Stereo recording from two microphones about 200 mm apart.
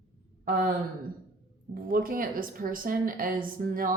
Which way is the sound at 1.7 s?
45° right (ahead or behind).